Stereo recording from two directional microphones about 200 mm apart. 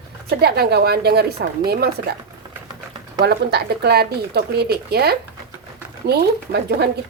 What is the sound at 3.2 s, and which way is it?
Speech, 55° right (ahead or behind).